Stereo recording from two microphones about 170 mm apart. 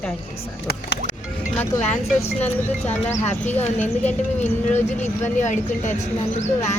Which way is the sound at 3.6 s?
40° left (ahead or behind).